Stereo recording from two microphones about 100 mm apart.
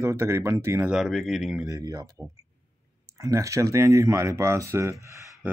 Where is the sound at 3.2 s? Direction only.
30° right (ahead or behind).